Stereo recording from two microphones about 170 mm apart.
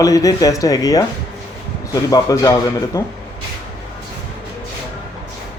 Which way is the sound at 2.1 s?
20° left (ahead or behind).